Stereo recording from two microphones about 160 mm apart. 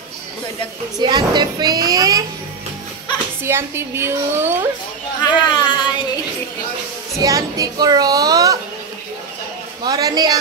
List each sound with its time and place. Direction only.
1.0 s a child's voice: 25° right (ahead or behind)
3.4 s a woman's voice: 15° right (ahead or behind)
5.2 s speech: 30° left (ahead or behind)
7.2 s a child's voice: 20° right (ahead or behind)
9.8 s a child's voice: 25° right (ahead or behind)